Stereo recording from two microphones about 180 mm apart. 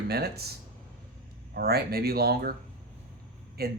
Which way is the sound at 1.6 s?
60° right (ahead or behind).